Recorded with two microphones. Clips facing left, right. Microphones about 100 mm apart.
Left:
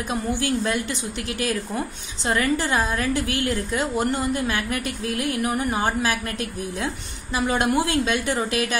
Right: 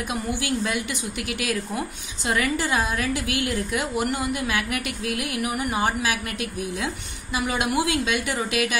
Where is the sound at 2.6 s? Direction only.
25° left (ahead or behind).